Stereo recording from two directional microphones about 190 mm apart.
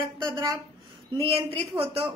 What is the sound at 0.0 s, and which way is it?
Speech, 25° right (ahead or behind).